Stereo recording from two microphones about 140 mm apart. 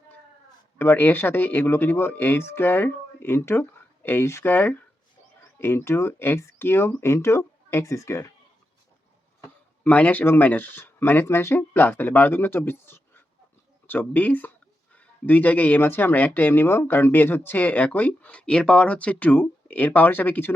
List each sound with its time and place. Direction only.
0.8 s speech: 15° left (ahead or behind)
9.8 s speech: 10° left (ahead or behind)